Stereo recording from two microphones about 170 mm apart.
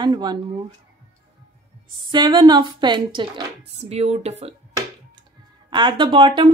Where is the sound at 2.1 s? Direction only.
25° right (ahead or behind).